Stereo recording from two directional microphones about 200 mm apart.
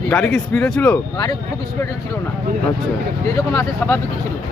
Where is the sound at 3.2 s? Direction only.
15° left (ahead or behind).